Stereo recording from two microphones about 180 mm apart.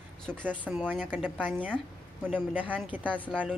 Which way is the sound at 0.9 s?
10° right (ahead or behind).